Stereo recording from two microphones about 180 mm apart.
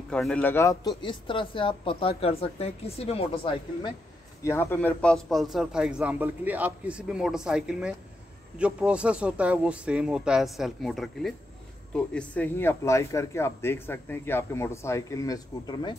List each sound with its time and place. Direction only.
0.1 s speech: 5° left (ahead or behind); by 3.3 s 35° left (ahead or behind)
4.4 s a man's voice: 15° left (ahead or behind)